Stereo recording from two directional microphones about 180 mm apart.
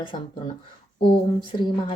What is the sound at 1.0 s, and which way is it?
Speech, 30° left (ahead or behind).